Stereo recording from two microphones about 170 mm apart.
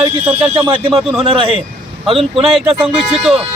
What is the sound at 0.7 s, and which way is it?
Speech, 30° right (ahead or behind).